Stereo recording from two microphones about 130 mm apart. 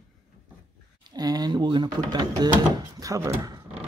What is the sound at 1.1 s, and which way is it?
Speech, 30° right (ahead or behind).